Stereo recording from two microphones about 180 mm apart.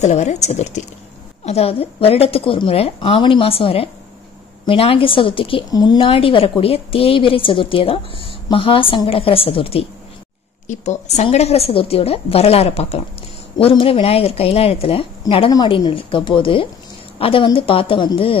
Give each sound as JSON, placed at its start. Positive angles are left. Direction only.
{"t": 0.0, "sound": "a woman's voice", "side_deg": 40}